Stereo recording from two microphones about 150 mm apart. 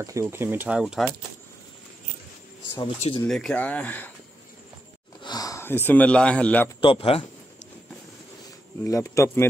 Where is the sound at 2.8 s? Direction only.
35° left (ahead or behind).